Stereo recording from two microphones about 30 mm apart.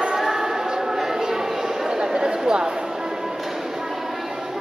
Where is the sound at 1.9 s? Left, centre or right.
Right.